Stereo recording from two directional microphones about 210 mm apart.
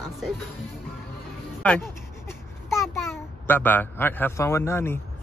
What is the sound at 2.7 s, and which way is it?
A child's voice, 10° left (ahead or behind).